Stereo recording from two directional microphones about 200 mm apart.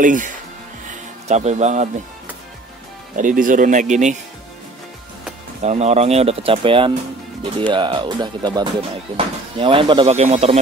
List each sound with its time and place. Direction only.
0.0 s speech: 40° right (ahead or behind)
3.2 s speech: 40° right (ahead or behind)
5.6 s speech: 35° right (ahead or behind)